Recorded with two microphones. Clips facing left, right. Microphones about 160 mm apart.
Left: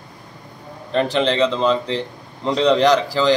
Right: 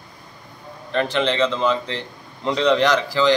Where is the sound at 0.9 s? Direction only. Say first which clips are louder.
Left 3 dB; 35° left (ahead or behind).